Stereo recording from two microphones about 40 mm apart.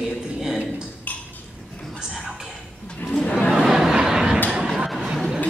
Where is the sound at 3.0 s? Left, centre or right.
Centre.